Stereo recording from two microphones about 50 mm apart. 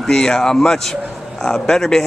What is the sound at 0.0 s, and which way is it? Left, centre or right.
Speech, centre.